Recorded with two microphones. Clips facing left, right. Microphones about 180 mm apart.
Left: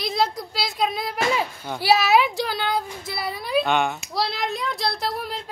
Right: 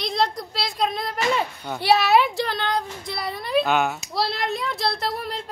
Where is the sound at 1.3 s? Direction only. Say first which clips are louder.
Even; 5° left (ahead or behind).